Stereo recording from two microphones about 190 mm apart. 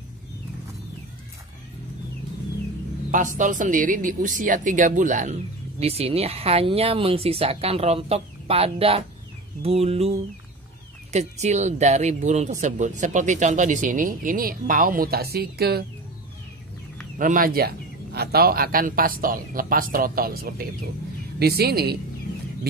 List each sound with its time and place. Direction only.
3.1 s speech: 40° right (ahead or behind)
17.2 s a man's voice: 45° right (ahead or behind)